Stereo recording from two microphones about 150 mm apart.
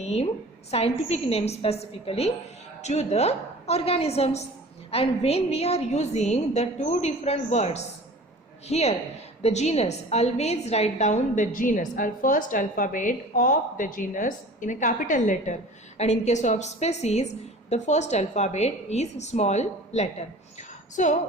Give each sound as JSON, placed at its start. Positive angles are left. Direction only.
{"t": 0.0, "sound": "a woman's voice", "side_deg": 45}